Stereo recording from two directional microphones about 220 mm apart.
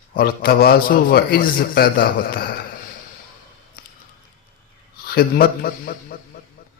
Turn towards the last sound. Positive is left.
turn(degrees=40)  # may be behind; listen again after turning